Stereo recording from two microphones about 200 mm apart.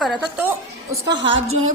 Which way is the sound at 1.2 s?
80° right.